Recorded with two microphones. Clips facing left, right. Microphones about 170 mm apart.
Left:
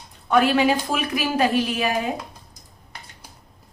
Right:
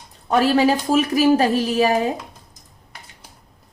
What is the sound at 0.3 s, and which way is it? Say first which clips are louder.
A woman's voice: right 2 dB; 35° right (ahead or behind).